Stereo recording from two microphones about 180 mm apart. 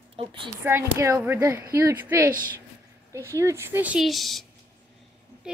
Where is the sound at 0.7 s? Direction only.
15° right (ahead or behind).